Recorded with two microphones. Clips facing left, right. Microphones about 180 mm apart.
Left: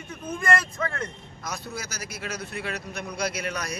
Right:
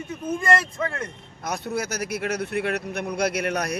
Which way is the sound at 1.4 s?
60° right (ahead or behind).